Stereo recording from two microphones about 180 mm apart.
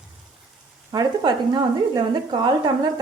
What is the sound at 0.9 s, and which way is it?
Speech, 25° right (ahead or behind).